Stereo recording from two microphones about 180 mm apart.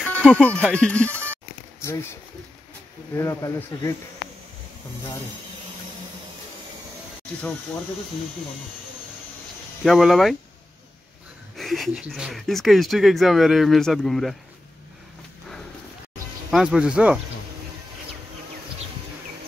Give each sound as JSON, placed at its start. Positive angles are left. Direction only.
{"t": 0.0, "sound": "speech", "side_deg": 5}
{"t": 1.3, "sound": "a sound", "side_deg": 15}
{"t": 3.2, "sound": "speech", "side_deg": 15}
{"t": 9.8, "sound": "speech", "side_deg": 0}
{"t": 11.5, "sound": "speech", "side_deg": 0}
{"t": 16.4, "sound": "speech", "side_deg": -5}